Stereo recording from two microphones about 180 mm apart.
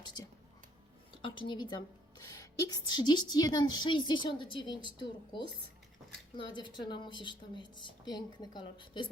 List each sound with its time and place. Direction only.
1.2 s a woman's voice: 25° left (ahead or behind)